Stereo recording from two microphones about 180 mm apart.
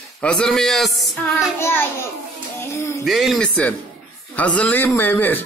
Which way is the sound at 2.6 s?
15° left (ahead or behind).